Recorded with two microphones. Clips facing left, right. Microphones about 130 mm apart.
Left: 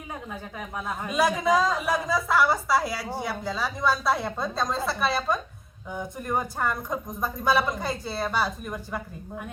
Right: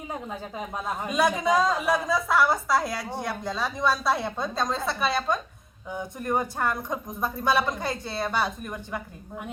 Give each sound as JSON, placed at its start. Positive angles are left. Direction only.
{"t": 0.1, "sound": "a woman's voice", "side_deg": -25}
{"t": 1.0, "sound": "a woman's voice", "side_deg": 0}